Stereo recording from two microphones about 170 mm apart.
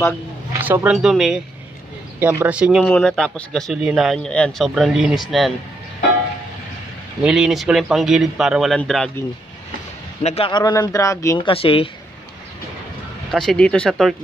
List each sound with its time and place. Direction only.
0.6 s a man's voice: 10° right (ahead or behind)
2.9 s a man's voice: 5° left (ahead or behind)
7.2 s a man's voice: 5° right (ahead or behind)
10.2 s speech: 35° left (ahead or behind)
10.6 s speech: 20° left (ahead or behind)
11.4 s speech: 35° left (ahead or behind)
13.3 s a man's voice: centre (ahead or behind)